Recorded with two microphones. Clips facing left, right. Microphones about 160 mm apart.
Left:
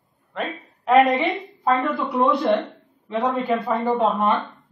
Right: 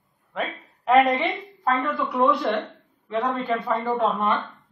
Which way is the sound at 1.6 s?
20° left (ahead or behind).